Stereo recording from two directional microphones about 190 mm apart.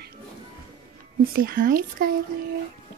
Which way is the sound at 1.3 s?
50° right (ahead or behind).